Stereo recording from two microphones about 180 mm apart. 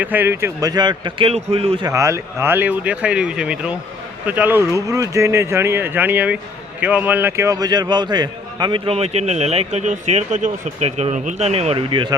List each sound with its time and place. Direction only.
0.0 s speech: 10° right (ahead or behind); by 1.9 s 30° right (ahead or behind)
1.9 s speech: 15° right (ahead or behind)